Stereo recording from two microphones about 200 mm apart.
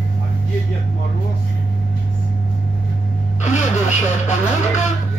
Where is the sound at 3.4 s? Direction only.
35° left (ahead or behind).